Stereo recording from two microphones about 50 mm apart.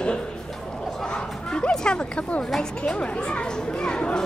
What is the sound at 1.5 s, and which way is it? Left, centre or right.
Speech, centre.